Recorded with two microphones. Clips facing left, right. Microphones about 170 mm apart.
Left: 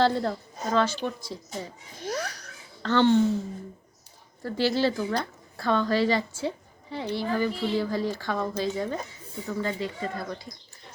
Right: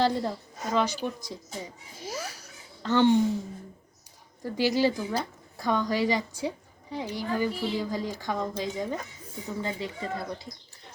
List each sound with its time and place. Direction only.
0.0 s a woman's voice: 15° right (ahead or behind)
4.4 s a woman's voice: 15° right (ahead or behind)